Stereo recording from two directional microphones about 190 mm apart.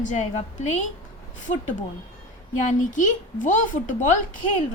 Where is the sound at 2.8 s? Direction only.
45° left (ahead or behind).